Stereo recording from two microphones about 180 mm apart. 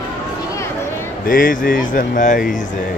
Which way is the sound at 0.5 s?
15° left (ahead or behind).